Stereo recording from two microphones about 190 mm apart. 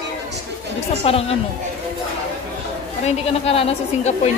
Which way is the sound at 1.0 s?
30° left (ahead or behind).